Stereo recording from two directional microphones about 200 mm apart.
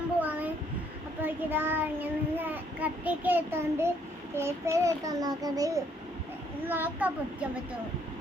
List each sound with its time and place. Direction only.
0.2 s a sound: 10° right (ahead or behind)
1.2 s child singing: 10° right (ahead or behind)
4.4 s a child's voice: 15° right (ahead or behind)